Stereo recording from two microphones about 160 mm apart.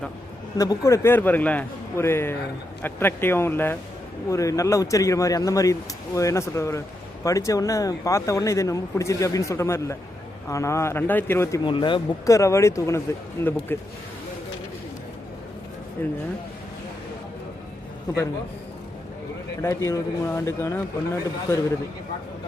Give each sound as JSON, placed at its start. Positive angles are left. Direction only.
{"t": 0.6, "sound": "a man's voice", "side_deg": 20}
{"t": 11.6, "sound": "a man's voice", "side_deg": 30}
{"t": 16.0, "sound": "speech", "side_deg": 15}
{"t": 19.6, "sound": "speech", "side_deg": 15}